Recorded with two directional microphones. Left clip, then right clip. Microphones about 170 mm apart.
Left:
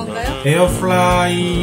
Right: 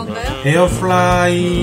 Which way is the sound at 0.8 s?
30° right (ahead or behind).